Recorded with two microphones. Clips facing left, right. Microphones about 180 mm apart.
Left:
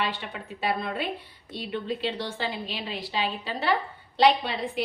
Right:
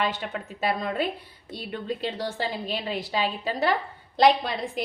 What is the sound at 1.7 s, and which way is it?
A woman's voice, 45° right (ahead or behind).